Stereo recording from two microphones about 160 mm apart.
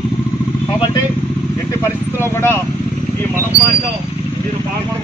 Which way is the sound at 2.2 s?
15° left (ahead or behind).